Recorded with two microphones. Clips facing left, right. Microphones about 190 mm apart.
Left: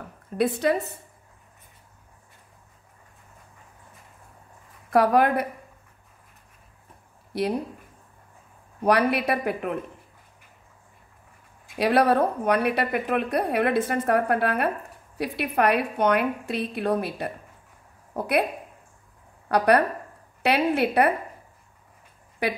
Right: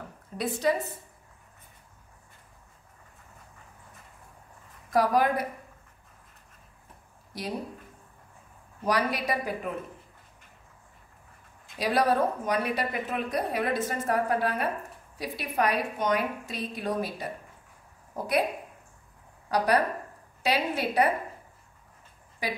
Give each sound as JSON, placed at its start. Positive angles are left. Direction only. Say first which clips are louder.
{"t": 0.4, "sound": "a woman's voice", "louder": "left 4 dB", "side_deg": 65}
{"t": 4.9, "sound": "a woman's voice", "louder": "left 4 dB", "side_deg": 60}
{"t": 7.3, "sound": "speech", "louder": "left 11 dB", "side_deg": 65}
{"t": 8.8, "sound": "a woman's voice", "louder": "left 6 dB", "side_deg": 60}
{"t": 11.8, "sound": "a woman's voice", "louder": "left 5 dB", "side_deg": 65}
{"t": 19.5, "sound": "a woman's voice", "louder": "left 5 dB", "side_deg": 60}
{"t": 22.4, "sound": "a woman's voice", "louder": "left 6 dB", "side_deg": 60}